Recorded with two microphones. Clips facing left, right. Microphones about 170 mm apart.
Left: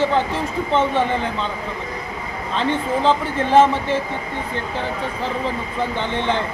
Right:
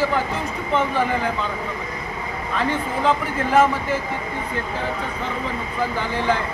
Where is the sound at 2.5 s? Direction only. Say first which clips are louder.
Left 3 dB; 30° left (ahead or behind).